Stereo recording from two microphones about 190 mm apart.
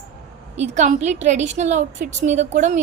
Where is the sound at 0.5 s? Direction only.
35° right (ahead or behind).